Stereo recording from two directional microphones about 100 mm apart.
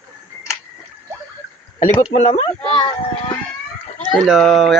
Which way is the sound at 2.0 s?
90° left.